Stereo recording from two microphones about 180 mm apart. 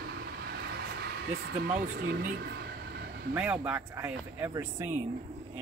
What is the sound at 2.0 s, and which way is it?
Speech, 55° right (ahead or behind).